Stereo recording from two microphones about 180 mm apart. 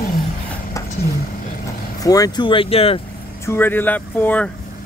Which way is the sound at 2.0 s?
20° left (ahead or behind).